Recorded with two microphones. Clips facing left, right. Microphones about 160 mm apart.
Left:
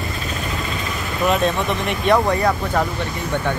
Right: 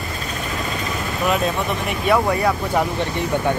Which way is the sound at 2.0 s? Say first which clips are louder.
Left 1 dB; 10° right (ahead or behind).